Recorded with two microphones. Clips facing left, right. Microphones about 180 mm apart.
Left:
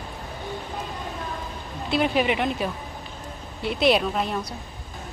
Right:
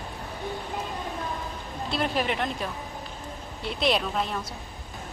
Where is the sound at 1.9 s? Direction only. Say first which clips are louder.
Left 5 dB; 5° left (ahead or behind).